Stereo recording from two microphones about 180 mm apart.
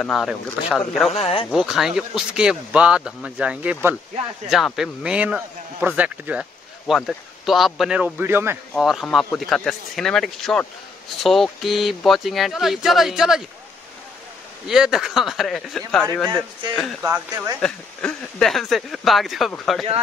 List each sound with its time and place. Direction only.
0.0 s speech: centre (ahead or behind)
1.1 s speech: 30° left (ahead or behind)
1.5 s a man's voice: centre (ahead or behind)
8.7 s speech: centre (ahead or behind)
14.7 s speech: 5° right (ahead or behind)
17.0 s a man's voice: 10° right (ahead or behind)
17.6 s speech: 5° left (ahead or behind)